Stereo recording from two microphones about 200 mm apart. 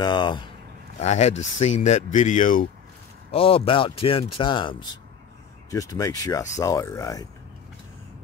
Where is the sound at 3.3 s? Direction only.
30° left (ahead or behind).